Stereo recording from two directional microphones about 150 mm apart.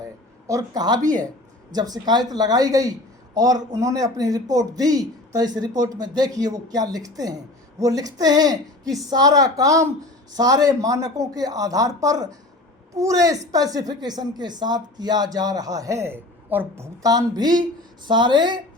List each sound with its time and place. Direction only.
0.4 s a woman's voice: 25° right (ahead or behind)